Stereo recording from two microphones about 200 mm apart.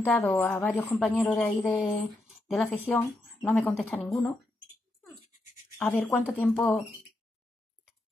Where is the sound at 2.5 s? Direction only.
Centre (ahead or behind).